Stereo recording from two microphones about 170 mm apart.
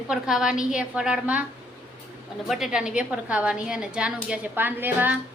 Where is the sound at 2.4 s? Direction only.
5° right (ahead or behind).